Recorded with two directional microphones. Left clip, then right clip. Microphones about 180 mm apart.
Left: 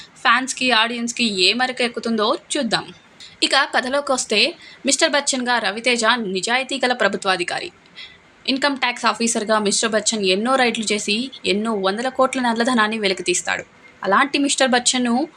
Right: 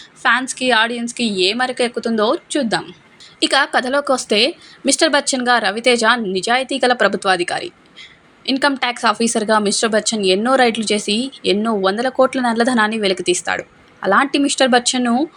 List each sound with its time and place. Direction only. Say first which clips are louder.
0.2 s speech: right 1 dB; 15° right (ahead or behind)